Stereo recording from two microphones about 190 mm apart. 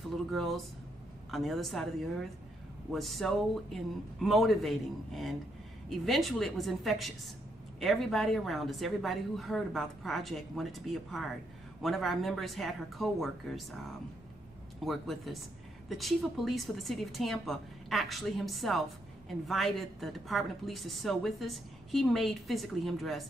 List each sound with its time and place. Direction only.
0.3 s a woman's voice: centre (ahead or behind)
2.9 s a woman's voice: centre (ahead or behind)